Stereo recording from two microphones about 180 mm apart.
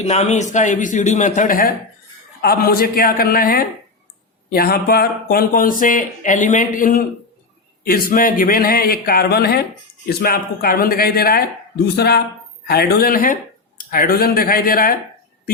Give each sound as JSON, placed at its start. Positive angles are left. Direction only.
{"t": 0.0, "sound": "a man's voice", "side_deg": 40}